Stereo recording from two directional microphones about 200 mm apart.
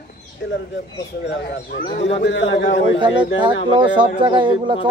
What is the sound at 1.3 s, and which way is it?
Speech, 55° left (ahead or behind).